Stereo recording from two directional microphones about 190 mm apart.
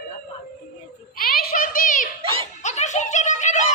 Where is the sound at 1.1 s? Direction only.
50° left (ahead or behind).